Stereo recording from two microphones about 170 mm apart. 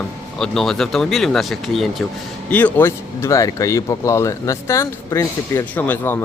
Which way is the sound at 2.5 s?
10° left (ahead or behind).